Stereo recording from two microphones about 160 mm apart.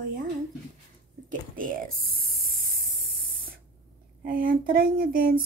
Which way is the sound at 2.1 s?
65° right (ahead or behind).